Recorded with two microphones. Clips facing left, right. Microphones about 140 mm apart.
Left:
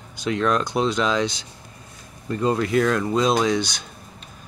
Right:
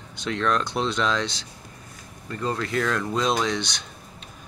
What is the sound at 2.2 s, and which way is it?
Speech, 15° left (ahead or behind).